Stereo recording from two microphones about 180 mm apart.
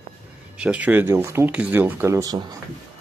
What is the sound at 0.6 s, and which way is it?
Speech, 5° right (ahead or behind).